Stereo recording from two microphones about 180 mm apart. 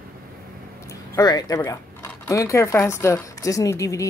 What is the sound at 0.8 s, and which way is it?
Speech, 20° left (ahead or behind).